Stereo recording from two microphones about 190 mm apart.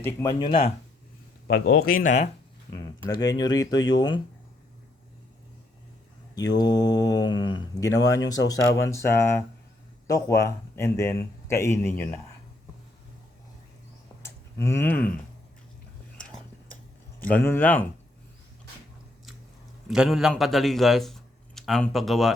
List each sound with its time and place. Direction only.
0.0 s a man's voice: 15° left (ahead or behind)
0.4 s speech: 30° left (ahead or behind)
1.5 s speech: 60° left (ahead or behind); by 2.3 s 40° left (ahead or behind)
2.7 s speech: 20° left (ahead or behind)
6.6 s a man's voice: 20° left (ahead or behind)
14.2 s a sound: 15° left (ahead or behind)
17.4 s a man's voice: 10° left (ahead or behind)
19.9 s a man's voice: centre (ahead or behind)